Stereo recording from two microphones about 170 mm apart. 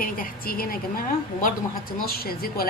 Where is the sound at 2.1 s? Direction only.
65° left (ahead or behind).